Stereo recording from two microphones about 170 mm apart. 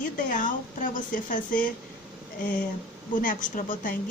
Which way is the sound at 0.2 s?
50° left (ahead or behind).